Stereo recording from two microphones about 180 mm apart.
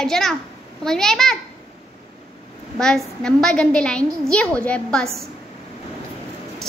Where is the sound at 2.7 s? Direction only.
5° left (ahead or behind).